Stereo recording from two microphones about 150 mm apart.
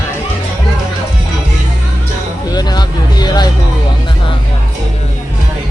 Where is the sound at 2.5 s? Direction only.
25° left (ahead or behind).